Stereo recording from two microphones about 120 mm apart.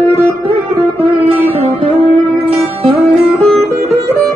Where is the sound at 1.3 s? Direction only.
55° right (ahead or behind).